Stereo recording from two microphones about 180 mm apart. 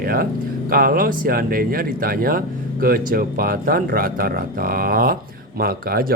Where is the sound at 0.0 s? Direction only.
55° right (ahead or behind).